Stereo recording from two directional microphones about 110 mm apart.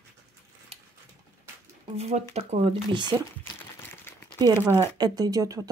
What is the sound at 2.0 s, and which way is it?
Speech, 80° right.